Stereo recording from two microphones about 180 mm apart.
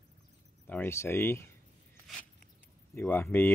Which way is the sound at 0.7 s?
10° left (ahead or behind).